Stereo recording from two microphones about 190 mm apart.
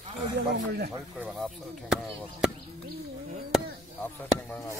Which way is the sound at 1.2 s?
5° right (ahead or behind).